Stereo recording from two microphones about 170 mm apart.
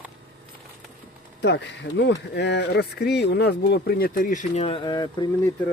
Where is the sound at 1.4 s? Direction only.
90° left; by 4.6 s 45° left (ahead or behind).